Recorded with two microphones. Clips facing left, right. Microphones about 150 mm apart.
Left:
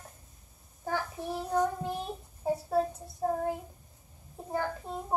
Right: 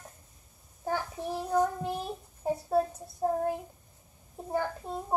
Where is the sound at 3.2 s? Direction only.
10° right (ahead or behind).